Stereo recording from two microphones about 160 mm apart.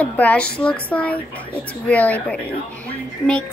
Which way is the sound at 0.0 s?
10° left (ahead or behind).